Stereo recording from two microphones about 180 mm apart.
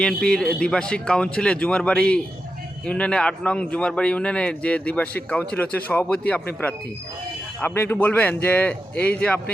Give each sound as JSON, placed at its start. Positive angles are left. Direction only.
{"t": 0.0, "sound": "a man's voice", "side_deg": 5}